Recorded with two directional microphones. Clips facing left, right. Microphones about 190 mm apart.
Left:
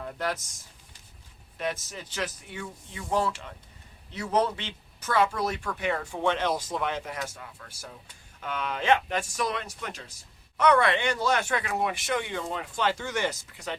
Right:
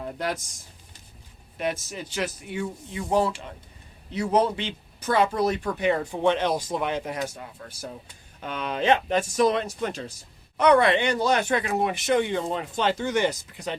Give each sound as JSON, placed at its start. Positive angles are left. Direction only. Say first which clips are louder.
{"t": 0.0, "sound": "speech", "louder": "right 2 dB", "side_deg": -15}
{"t": 1.5, "sound": "speech", "louder": "right 4 dB", "side_deg": -10}
{"t": 7.3, "sound": "speech", "louder": "right 5 dB", "side_deg": -30}
{"t": 7.7, "sound": "speech", "louder": "right 7 dB", "side_deg": -20}
{"t": 10.6, "sound": "speech", "louder": "right 4 dB", "side_deg": -15}